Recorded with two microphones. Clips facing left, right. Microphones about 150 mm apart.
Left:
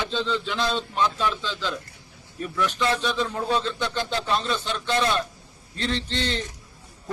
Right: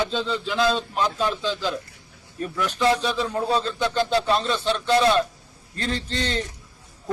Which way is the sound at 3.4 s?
35° right (ahead or behind).